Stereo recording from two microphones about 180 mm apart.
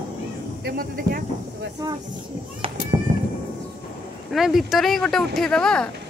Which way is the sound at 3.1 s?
50° right (ahead or behind).